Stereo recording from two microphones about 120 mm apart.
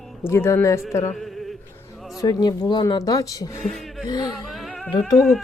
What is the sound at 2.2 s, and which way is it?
Speech, 35° left (ahead or behind).